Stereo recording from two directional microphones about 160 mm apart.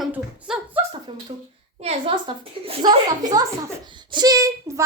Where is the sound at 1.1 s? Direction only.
30° right (ahead or behind).